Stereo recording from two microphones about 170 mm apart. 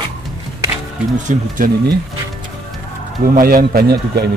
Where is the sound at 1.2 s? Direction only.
50° right (ahead or behind).